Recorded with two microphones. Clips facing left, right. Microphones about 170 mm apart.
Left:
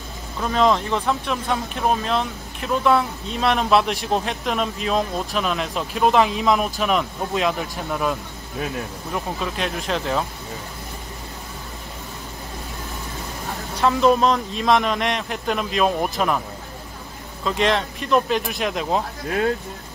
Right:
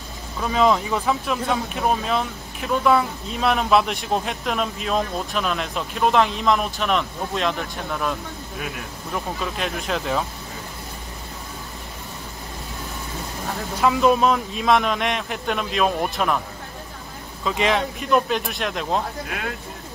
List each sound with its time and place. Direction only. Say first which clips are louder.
0.4 s speech: even; 5° right (ahead or behind)
13.7 s speech: left 1 dB; 5° right (ahead or behind)
17.4 s speech: left 1 dB; centre (ahead or behind)
19.2 s speech: left 8 dB; 35° left (ahead or behind)